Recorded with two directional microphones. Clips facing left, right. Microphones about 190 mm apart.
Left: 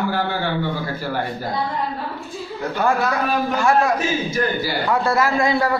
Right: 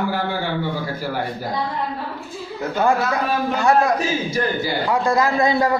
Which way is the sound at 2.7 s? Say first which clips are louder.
Right 1 dB; 15° right (ahead or behind).